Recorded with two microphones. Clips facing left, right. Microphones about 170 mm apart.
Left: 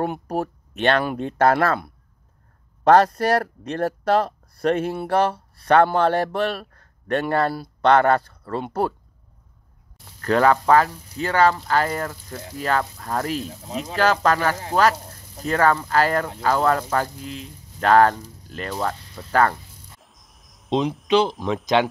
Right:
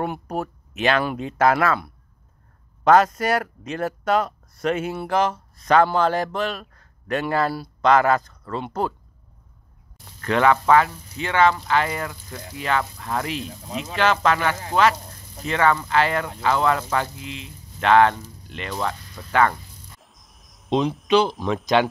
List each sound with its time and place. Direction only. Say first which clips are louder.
0.0 s speech: left 2 dB; 40° left (ahead or behind)
1.0 s speech: left 1 dB; 55° left (ahead or behind)
1.5 s speech: even; 35° left (ahead or behind)
2.8 s speech: left 1 dB; 35° left (ahead or behind)
5.7 s speech: left 1 dB; 60° left (ahead or behind)
10.2 s speech: left 1 dB; 40° left (ahead or behind)
20.0 s cricket: even; centre (ahead or behind)
21.1 s speech: even; 20° left (ahead or behind)